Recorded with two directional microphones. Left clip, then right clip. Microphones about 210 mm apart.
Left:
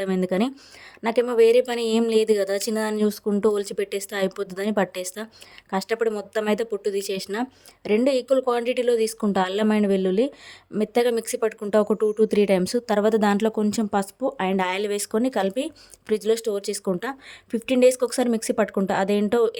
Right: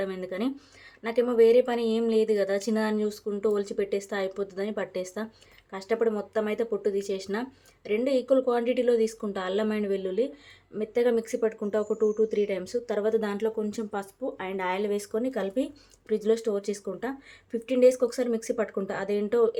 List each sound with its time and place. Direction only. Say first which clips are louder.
0.0 s speech: left 7 dB; 45° left (ahead or behind)